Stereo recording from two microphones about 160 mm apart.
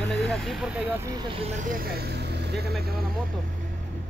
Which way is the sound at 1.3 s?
40° right (ahead or behind).